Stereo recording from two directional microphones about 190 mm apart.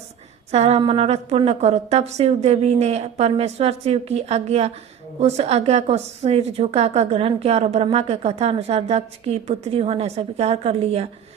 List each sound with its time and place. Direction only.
0.5 s a woman's voice: 35° right (ahead or behind)